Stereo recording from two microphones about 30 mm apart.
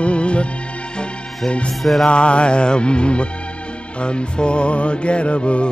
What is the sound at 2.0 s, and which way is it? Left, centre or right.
Music, left.